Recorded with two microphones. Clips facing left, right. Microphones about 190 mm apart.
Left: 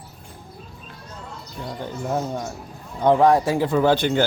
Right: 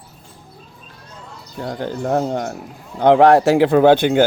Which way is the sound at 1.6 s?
80° right.